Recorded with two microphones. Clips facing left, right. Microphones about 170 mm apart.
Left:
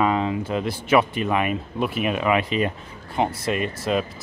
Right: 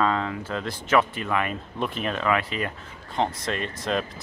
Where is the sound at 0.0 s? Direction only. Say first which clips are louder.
Left 3 dB; 15° left (ahead or behind).